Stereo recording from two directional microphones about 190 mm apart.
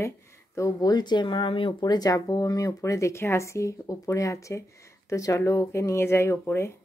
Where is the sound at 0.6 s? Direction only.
20° left (ahead or behind).